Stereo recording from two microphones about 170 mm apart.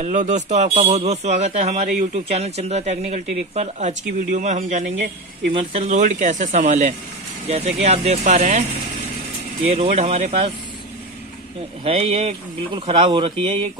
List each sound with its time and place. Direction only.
0.0 s speech: 45° right (ahead or behind)
5.5 s speech: 35° right (ahead or behind)
9.8 s speech: 40° right (ahead or behind)
11.8 s speech: 35° right (ahead or behind)